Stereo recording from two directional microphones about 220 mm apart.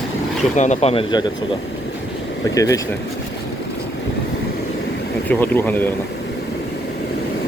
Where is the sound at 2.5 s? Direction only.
15° left (ahead or behind).